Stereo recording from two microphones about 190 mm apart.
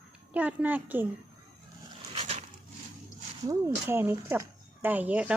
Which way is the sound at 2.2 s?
35° right (ahead or behind).